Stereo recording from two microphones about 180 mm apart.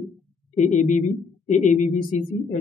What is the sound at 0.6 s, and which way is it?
A woman's voice, 40° left (ahead or behind).